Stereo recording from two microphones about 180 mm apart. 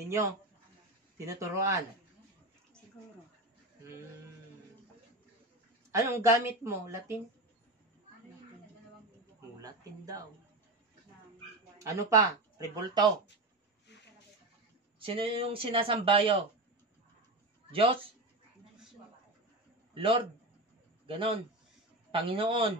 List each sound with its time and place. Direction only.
1.1 s a woman's voice: 15° right (ahead or behind)
5.9 s a woman's voice: 15° right (ahead or behind)
9.6 s speech: 20° right (ahead or behind)
11.8 s speech: 15° right (ahead or behind)
15.0 s speech: 30° right (ahead or behind)
17.6 s speech: 30° right (ahead or behind)
19.9 s a man's voice: 30° right (ahead or behind)